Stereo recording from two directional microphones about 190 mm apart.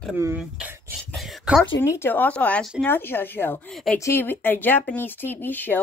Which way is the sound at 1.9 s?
10° left (ahead or behind).